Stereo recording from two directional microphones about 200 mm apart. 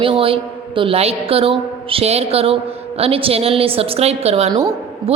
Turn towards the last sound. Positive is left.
turn(degrees=-20)  # may be behind; listen again after turning